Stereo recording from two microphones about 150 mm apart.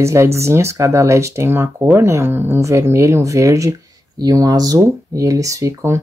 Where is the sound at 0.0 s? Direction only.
20° right (ahead or behind).